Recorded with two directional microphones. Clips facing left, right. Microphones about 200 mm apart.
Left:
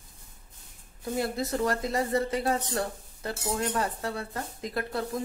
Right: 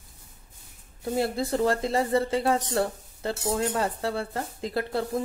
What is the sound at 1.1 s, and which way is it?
Speech, 30° right (ahead or behind).